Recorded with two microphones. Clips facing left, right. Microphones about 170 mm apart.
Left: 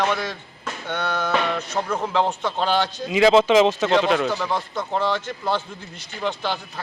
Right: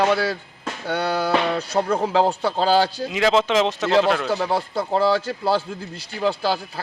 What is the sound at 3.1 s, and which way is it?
Speech, centre (ahead or behind).